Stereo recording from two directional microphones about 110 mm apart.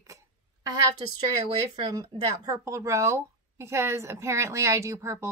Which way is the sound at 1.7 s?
40° right (ahead or behind).